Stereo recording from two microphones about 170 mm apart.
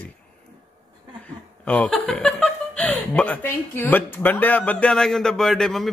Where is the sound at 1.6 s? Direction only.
5° left (ahead or behind).